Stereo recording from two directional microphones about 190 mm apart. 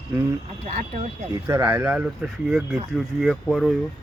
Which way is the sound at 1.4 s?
10° right (ahead or behind).